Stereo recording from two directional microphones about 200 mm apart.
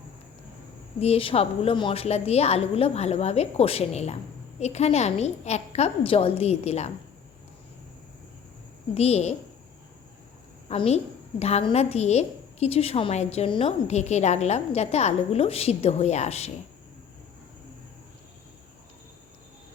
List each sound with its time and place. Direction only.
0.9 s a woman's voice: 30° left (ahead or behind)
9.0 s a woman's voice: 30° left (ahead or behind)
10.7 s a woman's voice: 30° left (ahead or behind)